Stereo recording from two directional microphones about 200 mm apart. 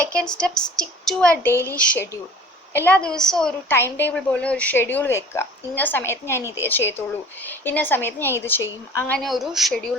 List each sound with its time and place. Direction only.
0.1 s a woman's voice: 5° left (ahead or behind)